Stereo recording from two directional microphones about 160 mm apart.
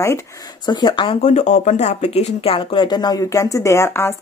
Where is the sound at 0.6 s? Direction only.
30° left (ahead or behind).